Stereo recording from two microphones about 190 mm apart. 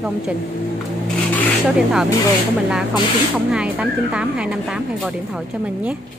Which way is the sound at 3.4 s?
5° right (ahead or behind).